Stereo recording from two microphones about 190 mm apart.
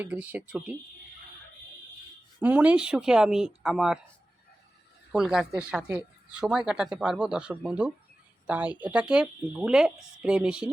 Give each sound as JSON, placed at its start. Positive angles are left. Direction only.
{"t": 0.0, "sound": "speech", "side_deg": -10}
{"t": 2.4, "sound": "speech", "side_deg": -5}
{"t": 5.1, "sound": "speech", "side_deg": -5}